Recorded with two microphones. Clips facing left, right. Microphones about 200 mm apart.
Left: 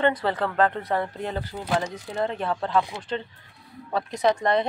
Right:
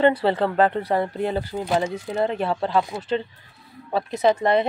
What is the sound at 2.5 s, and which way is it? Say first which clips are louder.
Speech: right 2 dB; 20° right (ahead or behind).